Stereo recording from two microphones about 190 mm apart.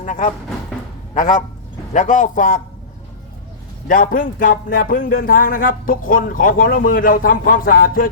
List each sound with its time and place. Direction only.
0.0 s speech: 40° left (ahead or behind)
3.8 s speech: 45° left (ahead or behind)